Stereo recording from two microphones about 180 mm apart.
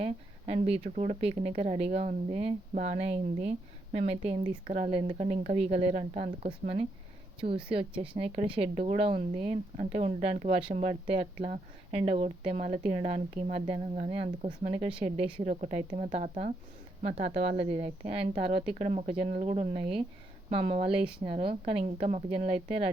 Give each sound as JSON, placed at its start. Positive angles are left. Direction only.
{"t": 0.0, "sound": "speech", "side_deg": -35}